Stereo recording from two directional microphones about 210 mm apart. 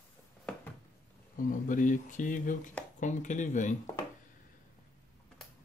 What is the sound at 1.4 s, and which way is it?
Speech, 40° left (ahead or behind).